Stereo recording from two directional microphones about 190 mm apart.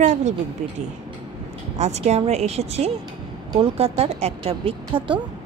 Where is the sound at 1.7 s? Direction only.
35° right (ahead or behind).